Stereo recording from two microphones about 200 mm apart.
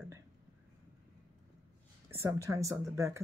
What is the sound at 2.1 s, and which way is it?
Speech, 15° right (ahead or behind).